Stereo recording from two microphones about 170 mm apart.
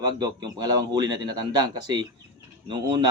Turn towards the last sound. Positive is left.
turn(degrees=-25)  # may be behind; listen again after turning